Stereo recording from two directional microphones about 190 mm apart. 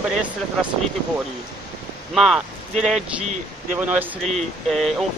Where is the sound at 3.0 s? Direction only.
40° right (ahead or behind).